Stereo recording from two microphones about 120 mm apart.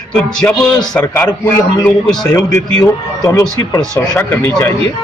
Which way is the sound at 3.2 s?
25° left (ahead or behind).